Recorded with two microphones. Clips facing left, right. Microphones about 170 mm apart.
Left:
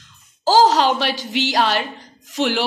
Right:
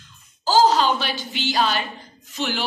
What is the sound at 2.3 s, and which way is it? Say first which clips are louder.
Speech: left 7 dB; 90° left.